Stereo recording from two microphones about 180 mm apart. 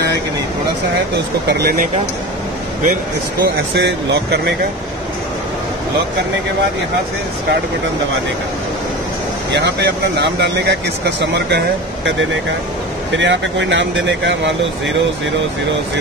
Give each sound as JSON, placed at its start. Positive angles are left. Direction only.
{"t": 1.1, "sound": "speech", "side_deg": -65}
{"t": 3.4, "sound": "speech", "side_deg": -70}
{"t": 9.5, "sound": "speech", "side_deg": -75}